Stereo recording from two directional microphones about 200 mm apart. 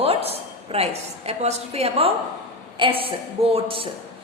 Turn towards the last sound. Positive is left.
turn(degrees=-25)  # may be behind; listen again after turning